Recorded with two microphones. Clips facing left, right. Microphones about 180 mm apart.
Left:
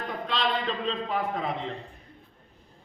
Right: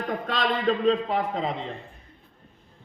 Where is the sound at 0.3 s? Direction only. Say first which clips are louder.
Right 4 dB; 45° right (ahead or behind).